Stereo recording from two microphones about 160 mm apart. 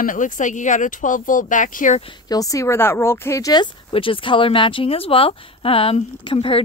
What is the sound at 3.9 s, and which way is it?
Speech, 35° left (ahead or behind).